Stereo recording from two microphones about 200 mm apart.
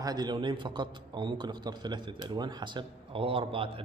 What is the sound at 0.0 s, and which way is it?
A man's voice, 20° right (ahead or behind).